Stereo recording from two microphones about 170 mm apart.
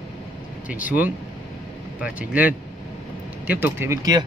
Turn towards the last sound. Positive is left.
turn(degrees=-20)  # may be behind; listen again after turning